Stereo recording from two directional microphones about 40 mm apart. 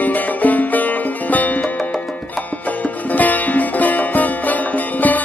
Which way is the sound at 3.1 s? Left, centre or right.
Left.